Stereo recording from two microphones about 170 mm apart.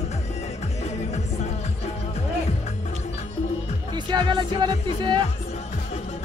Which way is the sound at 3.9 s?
25° right (ahead or behind).